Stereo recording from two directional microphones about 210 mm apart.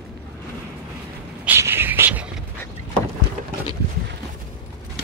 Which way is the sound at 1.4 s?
10° right (ahead or behind).